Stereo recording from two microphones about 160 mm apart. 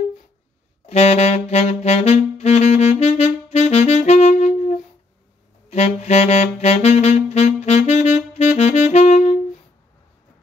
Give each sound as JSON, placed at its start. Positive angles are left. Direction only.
{"t": 0.8, "sound": "saxophone", "side_deg": 40}